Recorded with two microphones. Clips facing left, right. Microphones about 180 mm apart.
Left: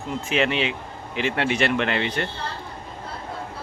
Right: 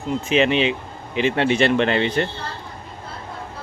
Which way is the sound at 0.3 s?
20° right (ahead or behind).